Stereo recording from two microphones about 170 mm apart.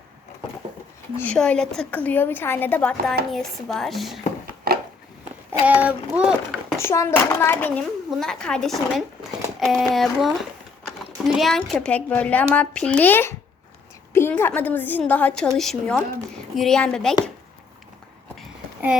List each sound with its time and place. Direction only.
1.2 s a child's voice: 5° left (ahead or behind)
4.7 s a sound: 60° right (ahead or behind)
5.5 s a child's voice: 10° right (ahead or behind)
6.7 s a child's voice: 15° left (ahead or behind)